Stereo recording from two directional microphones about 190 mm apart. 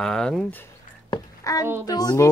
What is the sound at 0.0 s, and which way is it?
Speech, centre (ahead or behind).